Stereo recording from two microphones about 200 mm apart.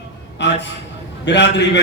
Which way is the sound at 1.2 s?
60° left (ahead or behind).